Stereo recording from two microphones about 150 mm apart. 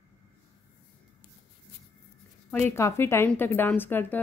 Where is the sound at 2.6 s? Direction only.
15° left (ahead or behind).